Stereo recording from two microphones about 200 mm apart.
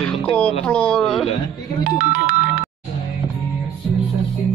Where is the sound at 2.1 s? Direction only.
40° right (ahead or behind).